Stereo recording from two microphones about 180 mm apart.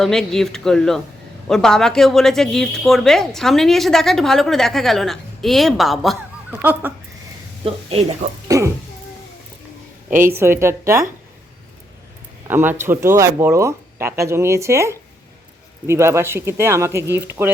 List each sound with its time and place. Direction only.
0.0 s a woman's voice: 5° left (ahead or behind)
6.6 s speech: 10° right (ahead or behind)
8.4 s music: 15° right (ahead or behind)
10.2 s speech: 15° right (ahead or behind)
12.5 s speech: 10° right (ahead or behind)